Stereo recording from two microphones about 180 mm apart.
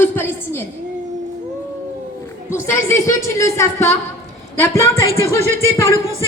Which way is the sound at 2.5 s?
15° left (ahead or behind).